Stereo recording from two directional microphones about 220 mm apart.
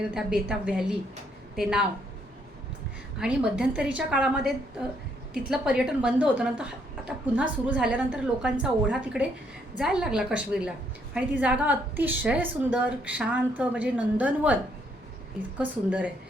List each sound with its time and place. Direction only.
0.1 s a woman's voice: 5° right (ahead or behind)
3.2 s a woman's voice: 5° right (ahead or behind)